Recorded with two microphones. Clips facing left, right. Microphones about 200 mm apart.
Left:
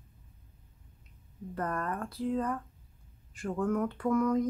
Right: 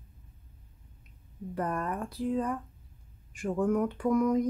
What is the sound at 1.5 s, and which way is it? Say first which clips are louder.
Speech: right 2 dB; 15° right (ahead or behind).